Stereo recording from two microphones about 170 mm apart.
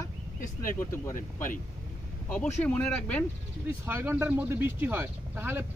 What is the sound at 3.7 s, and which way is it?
Speech, 15° right (ahead or behind).